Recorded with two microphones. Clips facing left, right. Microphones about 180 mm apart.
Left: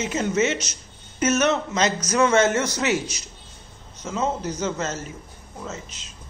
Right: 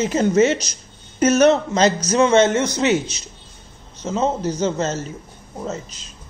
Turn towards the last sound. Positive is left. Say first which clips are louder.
# right 6 dB
turn(degrees=-35)  # may be behind; listen again after turning